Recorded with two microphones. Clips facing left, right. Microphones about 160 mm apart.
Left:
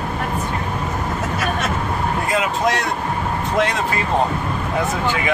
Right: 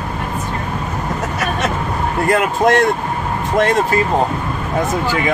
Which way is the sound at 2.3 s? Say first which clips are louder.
Right 7 dB; 55° right (ahead or behind).